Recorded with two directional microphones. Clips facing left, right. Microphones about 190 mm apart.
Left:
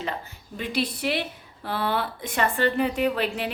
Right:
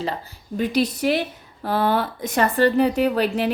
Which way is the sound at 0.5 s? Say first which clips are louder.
Right 7 dB; 40° right (ahead or behind).